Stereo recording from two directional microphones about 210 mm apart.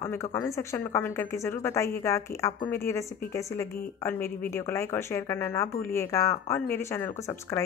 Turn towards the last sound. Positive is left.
turn(degrees=15)  # may be behind; listen again after turning